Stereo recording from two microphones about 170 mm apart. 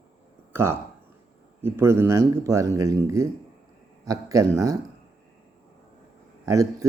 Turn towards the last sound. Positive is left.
turn(degrees=-20)  # may be behind; listen again after turning